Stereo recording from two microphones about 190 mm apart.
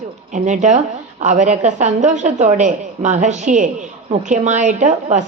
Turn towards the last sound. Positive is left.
turn(degrees=-40)  # may be behind; listen again after turning